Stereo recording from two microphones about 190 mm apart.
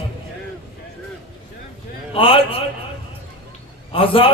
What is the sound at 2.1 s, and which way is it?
Speech, 30° left (ahead or behind).